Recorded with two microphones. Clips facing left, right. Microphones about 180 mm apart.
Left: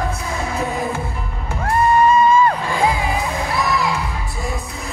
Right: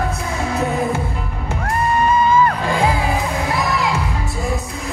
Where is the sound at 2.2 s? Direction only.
30° left (ahead or behind).